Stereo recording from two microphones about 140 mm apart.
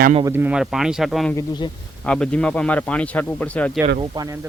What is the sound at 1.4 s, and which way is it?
Speech, 30° left (ahead or behind).